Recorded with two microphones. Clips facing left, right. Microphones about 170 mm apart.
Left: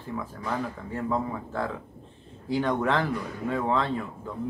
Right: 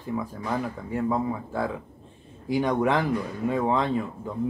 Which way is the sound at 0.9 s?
10° right (ahead or behind).